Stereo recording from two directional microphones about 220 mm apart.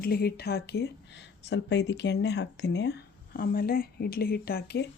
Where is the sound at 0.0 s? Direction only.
45° left (ahead or behind).